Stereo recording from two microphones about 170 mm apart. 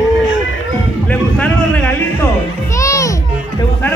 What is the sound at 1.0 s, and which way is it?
Music, 10° left (ahead or behind).